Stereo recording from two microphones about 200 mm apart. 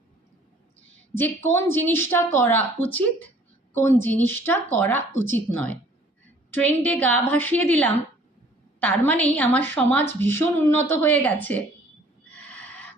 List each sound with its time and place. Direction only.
1.1 s speech: 10° left (ahead or behind)
4.3 s speech: 10° left (ahead or behind)
5.1 s speech: 90° right
5.5 s speech: 10° left (ahead or behind)